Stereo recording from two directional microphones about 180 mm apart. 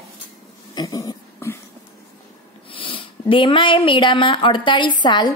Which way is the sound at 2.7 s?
30° left (ahead or behind).